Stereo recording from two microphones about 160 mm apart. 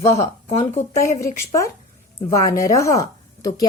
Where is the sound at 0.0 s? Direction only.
40° left (ahead or behind).